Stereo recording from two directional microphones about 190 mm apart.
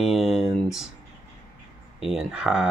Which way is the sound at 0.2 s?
30° left (ahead or behind).